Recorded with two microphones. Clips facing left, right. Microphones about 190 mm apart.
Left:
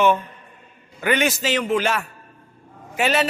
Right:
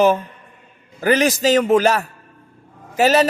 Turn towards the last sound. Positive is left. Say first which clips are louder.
# right 6 dB
turn(degrees=-40)  # may be behind; listen again after turning